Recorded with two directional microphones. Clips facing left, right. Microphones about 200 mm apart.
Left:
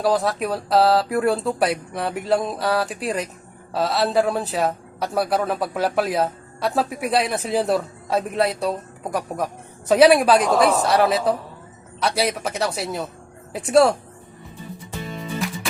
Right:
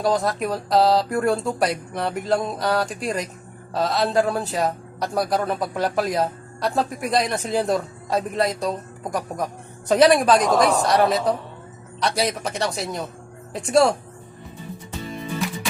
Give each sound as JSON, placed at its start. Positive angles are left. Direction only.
{"t": 0.0, "sound": "a man's voice", "side_deg": 0}